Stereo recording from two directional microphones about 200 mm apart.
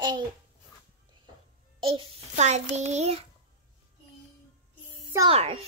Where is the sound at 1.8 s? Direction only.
25° right (ahead or behind).